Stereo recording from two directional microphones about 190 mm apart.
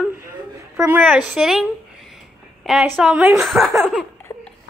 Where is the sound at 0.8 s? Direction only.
10° right (ahead or behind).